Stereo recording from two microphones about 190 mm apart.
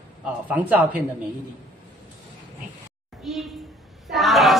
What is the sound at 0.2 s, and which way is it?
Speech, 10° right (ahead or behind).